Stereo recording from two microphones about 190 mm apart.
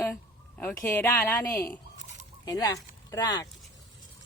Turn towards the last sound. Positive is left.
turn(degrees=20)  # may be behind; listen again after turning